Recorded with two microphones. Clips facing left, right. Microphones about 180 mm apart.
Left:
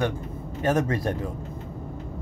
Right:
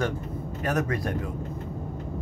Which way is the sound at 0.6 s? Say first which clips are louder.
Left 4 dB; 25° left (ahead or behind).